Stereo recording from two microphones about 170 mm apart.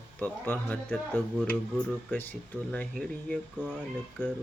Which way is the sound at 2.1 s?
10° left (ahead or behind).